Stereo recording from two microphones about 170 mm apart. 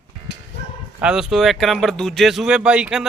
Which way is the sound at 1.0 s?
5° right (ahead or behind).